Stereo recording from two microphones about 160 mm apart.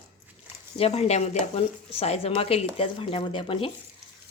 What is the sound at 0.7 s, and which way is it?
Speech, 40° left (ahead or behind).